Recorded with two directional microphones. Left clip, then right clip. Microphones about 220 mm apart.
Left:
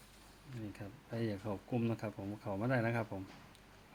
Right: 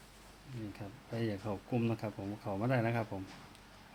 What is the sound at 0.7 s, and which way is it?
Speech, 10° left (ahead or behind).